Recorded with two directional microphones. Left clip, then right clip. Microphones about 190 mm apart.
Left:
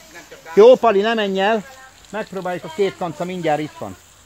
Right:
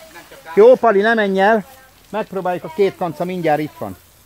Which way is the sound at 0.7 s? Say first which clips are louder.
Right 2 dB; 10° right (ahead or behind).